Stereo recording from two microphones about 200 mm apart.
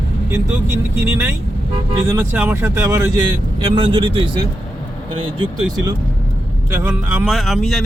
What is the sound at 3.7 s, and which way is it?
Speech, 25° right (ahead or behind).